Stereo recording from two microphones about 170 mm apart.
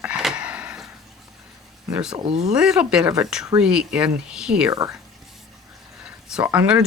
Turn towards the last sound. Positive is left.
turn(degrees=-10)  # may be behind; listen again after turning